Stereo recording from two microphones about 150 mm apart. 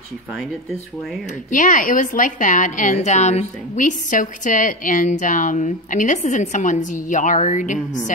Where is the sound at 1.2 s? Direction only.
55° left (ahead or behind).